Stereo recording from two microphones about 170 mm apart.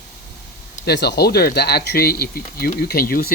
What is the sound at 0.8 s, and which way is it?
Speech, 80° left.